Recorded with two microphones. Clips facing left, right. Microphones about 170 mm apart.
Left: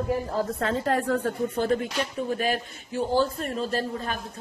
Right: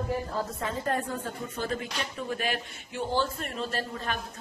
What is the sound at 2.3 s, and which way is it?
A woman's voice, 40° left (ahead or behind).